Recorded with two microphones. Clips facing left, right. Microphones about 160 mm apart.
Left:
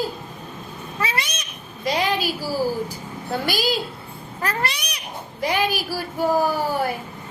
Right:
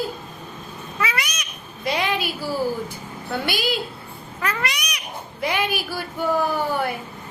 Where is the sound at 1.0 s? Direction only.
30° left (ahead or behind).